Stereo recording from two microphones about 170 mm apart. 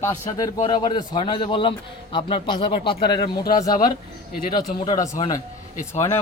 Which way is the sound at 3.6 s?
55° left (ahead or behind).